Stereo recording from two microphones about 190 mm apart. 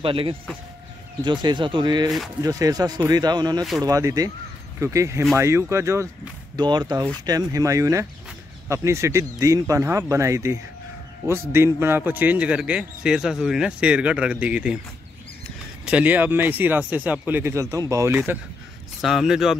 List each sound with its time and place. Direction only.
0.0 s speech: 30° right (ahead or behind)
2.0 s speech: centre (ahead or behind)
2.4 s speech: 20° right (ahead or behind)
15.8 s speech: 5° right (ahead or behind)